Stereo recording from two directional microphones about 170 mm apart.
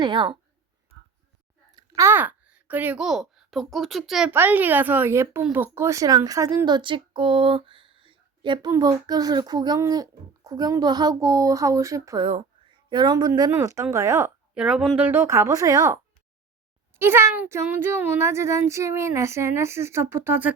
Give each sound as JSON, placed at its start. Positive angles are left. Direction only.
{"t": 0.0, "sound": "speech", "side_deg": -25}
{"t": 1.7, "sound": "speech", "side_deg": -15}
{"t": 4.3, "sound": "speech", "side_deg": -10}
{"t": 14.5, "sound": "speech", "side_deg": -5}
{"t": 17.0, "sound": "speech", "side_deg": -15}